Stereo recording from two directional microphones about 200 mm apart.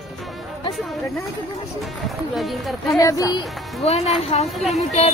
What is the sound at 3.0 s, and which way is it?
Speech, 15° left (ahead or behind).